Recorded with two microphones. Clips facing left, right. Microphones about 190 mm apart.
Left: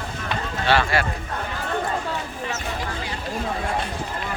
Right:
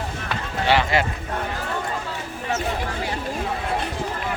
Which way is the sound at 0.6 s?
20° right (ahead or behind).